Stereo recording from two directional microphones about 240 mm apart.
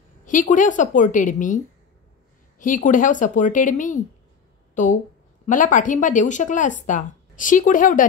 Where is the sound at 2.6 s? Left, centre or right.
Left.